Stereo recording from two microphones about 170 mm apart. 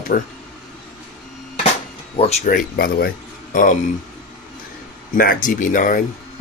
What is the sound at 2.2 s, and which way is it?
Speech, 40° left (ahead or behind).